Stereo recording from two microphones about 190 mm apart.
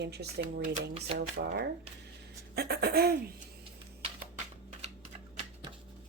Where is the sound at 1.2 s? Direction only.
60° right (ahead or behind).